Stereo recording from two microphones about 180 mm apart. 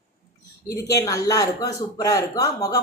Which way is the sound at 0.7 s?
20° left (ahead or behind).